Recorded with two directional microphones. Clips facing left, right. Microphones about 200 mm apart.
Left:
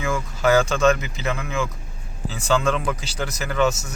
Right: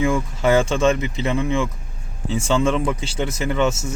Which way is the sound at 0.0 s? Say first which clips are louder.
Right 3 dB; 30° right (ahead or behind).